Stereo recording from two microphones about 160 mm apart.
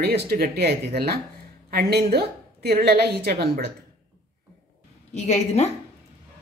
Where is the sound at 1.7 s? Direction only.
90° right.